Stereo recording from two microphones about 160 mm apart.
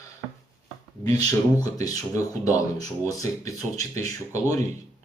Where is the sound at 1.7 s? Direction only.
20° left (ahead or behind).